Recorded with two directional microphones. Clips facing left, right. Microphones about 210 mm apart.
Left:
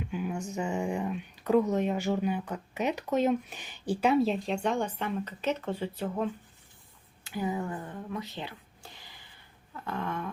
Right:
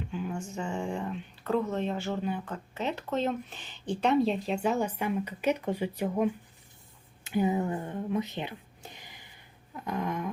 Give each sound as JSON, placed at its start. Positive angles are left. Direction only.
{"t": 0.1, "sound": "speech", "side_deg": 10}